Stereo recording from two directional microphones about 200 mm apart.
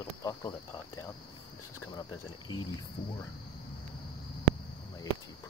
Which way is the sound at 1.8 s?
20° left (ahead or behind).